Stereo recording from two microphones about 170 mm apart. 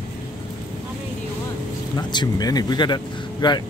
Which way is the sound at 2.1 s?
25° left (ahead or behind).